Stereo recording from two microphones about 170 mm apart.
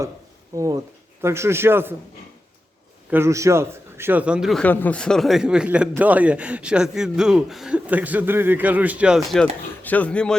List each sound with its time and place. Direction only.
0.5 s a man's voice: 20° right (ahead or behind)
3.1 s a man's voice: 15° right (ahead or behind); by 10.3 s 5° left (ahead or behind)